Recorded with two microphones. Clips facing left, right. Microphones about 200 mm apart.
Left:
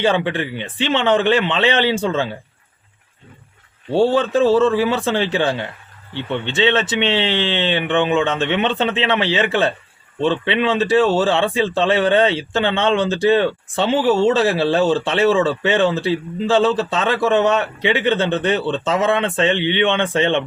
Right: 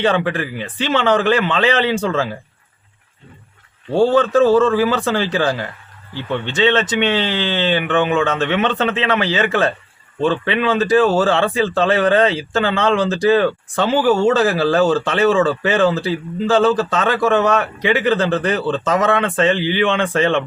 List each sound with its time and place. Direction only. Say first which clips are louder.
0.0 s speech: right 1 dB; 25° left (ahead or behind)
4.3 s speech: right 2 dB; 25° left (ahead or behind)